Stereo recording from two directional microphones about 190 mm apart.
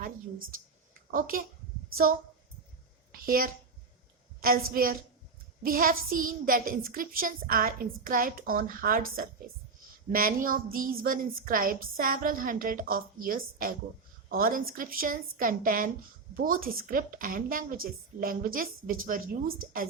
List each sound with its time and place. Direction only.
1.1 s a woman's voice: 50° right (ahead or behind)
3.1 s a woman's voice: 50° right (ahead or behind)